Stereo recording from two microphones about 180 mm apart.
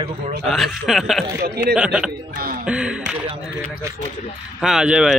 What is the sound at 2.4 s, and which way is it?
Speech, 55° right (ahead or behind).